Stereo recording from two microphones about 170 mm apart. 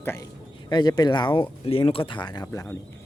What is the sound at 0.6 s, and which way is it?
Speech, 25° left (ahead or behind).